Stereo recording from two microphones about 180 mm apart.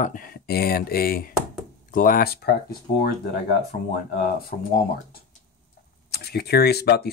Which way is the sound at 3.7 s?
45° left (ahead or behind).